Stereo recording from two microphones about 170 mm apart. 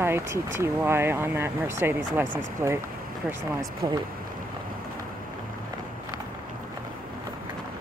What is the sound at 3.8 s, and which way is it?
Speech, 25° right (ahead or behind).